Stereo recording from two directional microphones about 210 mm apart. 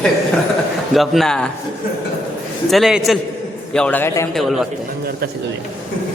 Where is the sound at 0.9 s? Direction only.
Centre (ahead or behind).